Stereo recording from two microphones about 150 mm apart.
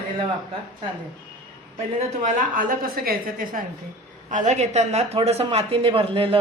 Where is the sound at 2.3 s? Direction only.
60° right (ahead or behind).